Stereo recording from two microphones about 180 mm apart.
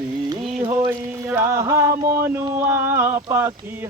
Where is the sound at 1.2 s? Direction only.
15° right (ahead or behind).